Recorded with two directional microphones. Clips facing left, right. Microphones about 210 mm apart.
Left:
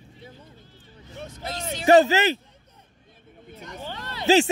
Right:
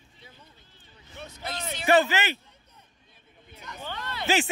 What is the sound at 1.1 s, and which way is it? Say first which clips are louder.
Speech: left 3 dB; 45° left (ahead or behind).